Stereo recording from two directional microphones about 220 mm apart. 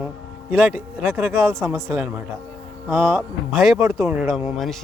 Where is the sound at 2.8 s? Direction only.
Centre (ahead or behind).